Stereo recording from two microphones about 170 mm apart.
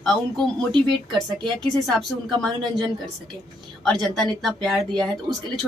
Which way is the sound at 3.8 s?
5° left (ahead or behind).